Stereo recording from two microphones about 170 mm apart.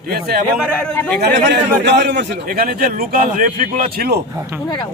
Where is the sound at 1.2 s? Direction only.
90° right; by 4.2 s 65° right (ahead or behind).